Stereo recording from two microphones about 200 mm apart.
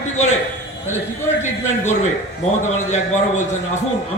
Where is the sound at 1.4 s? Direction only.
35° left (ahead or behind).